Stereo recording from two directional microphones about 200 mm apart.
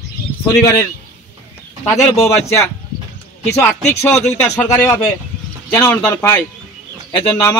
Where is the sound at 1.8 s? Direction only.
15° left (ahead or behind).